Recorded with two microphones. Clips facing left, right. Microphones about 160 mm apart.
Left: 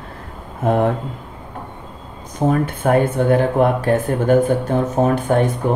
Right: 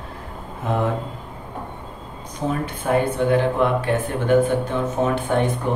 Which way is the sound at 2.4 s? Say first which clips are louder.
Left 6 dB; 50° left (ahead or behind).